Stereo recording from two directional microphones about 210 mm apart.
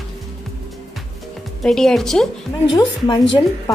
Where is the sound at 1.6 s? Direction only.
Centre (ahead or behind).